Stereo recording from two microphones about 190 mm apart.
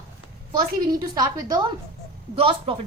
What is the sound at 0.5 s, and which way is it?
A woman's voice, 20° right (ahead or behind).